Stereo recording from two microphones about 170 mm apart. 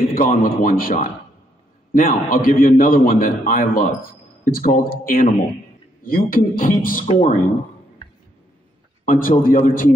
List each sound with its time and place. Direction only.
0.1 s a man's voice: 55° left (ahead or behind)
7.1 s speech: 35° left (ahead or behind)
9.0 s a man's voice: 50° left (ahead or behind)